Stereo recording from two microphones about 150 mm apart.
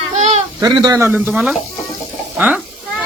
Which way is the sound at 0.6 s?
25° right (ahead or behind).